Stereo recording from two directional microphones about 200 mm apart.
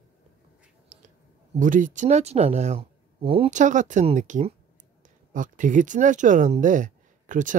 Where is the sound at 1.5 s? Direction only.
40° right (ahead or behind).